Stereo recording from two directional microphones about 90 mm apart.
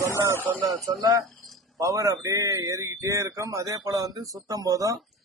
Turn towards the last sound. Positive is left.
turn(degrees=-40)  # may be behind; listen again after turning